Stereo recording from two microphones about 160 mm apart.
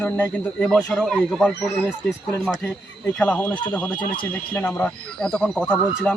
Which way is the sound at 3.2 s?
10° left (ahead or behind).